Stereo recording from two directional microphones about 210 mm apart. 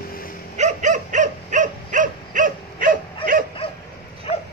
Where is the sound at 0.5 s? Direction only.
35° right (ahead or behind).